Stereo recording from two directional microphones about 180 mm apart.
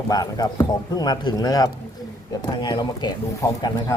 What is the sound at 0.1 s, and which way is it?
Speech, 20° left (ahead or behind).